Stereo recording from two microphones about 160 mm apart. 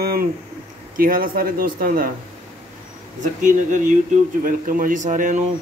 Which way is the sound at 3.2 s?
50° right (ahead or behind).